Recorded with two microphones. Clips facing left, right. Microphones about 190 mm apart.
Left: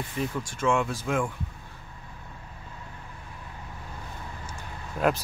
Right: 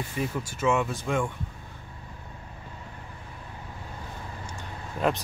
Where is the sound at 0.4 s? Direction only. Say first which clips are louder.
Even; 5° right (ahead or behind).